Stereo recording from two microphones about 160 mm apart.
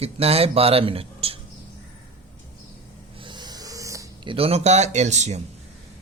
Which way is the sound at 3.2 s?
30° right (ahead or behind).